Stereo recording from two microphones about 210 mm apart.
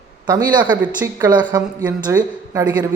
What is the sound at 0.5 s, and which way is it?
A woman's voice, 20° right (ahead or behind).